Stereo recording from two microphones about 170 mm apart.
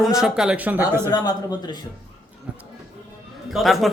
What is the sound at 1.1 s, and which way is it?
Speech, 25° left (ahead or behind).